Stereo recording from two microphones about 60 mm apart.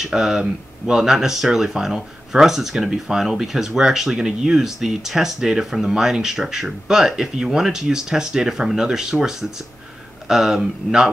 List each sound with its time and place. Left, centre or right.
0.0 s speech: centre